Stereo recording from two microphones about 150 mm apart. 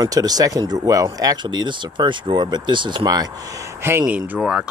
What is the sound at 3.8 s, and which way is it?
Speech, 15° right (ahead or behind).